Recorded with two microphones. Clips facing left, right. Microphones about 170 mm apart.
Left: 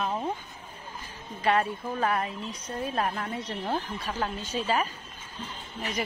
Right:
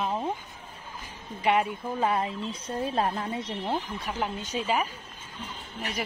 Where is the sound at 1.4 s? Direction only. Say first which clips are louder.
Right 1 dB; 15° right (ahead or behind).